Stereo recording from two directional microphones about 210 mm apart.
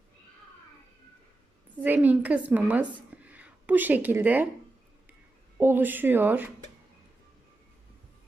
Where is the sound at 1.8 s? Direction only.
10° right (ahead or behind).